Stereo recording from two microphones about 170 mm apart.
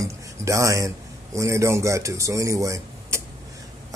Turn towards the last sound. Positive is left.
turn(degrees=-15)  # may be behind; listen again after turning